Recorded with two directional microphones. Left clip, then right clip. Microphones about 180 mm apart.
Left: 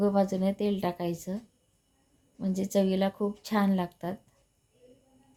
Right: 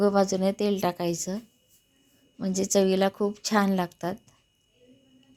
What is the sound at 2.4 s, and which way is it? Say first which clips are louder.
A woman's voice: right 4 dB; 15° right (ahead or behind).